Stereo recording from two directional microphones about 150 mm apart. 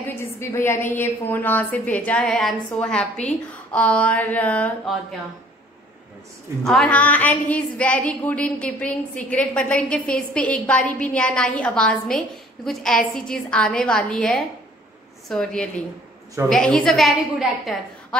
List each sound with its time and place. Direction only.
0.1 s a woman's voice: 15° left (ahead or behind)
6.6 s a woman's voice: centre (ahead or behind)